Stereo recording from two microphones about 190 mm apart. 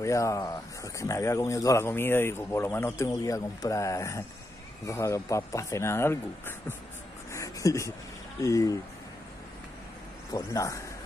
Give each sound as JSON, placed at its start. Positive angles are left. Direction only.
{"t": 0.0, "sound": "speech", "side_deg": 15}
{"t": 7.3, "sound": "a sound", "side_deg": 15}
{"t": 8.4, "sound": "speech", "side_deg": 15}
{"t": 10.3, "sound": "speech", "side_deg": 15}